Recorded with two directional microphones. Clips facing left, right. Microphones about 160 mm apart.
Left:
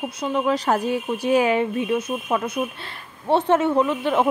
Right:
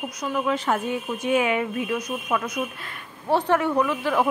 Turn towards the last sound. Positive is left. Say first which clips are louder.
# left 2 dB
turn(degrees=25)  # may be behind; listen again after turning